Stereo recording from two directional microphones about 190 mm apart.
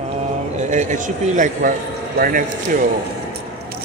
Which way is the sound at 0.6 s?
40° right (ahead or behind).